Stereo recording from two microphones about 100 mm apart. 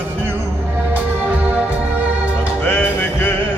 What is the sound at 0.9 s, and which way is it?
Music, 15° right (ahead or behind).